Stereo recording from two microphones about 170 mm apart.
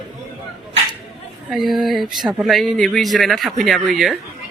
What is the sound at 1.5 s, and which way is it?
Speech, centre (ahead or behind).